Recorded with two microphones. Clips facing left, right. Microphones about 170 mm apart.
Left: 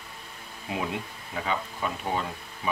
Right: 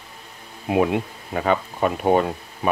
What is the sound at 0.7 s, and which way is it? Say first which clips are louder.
Speech: right 12 dB; 60° right (ahead or behind).